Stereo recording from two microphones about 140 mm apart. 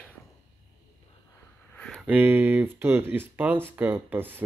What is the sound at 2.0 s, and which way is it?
Speech, 10° right (ahead or behind).